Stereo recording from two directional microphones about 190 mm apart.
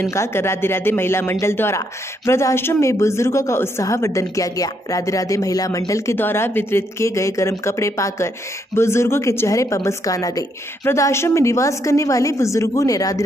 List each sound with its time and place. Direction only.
0.0 s speech: 15° left (ahead or behind)